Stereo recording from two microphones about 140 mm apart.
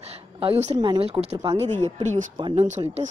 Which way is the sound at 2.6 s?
55° right (ahead or behind).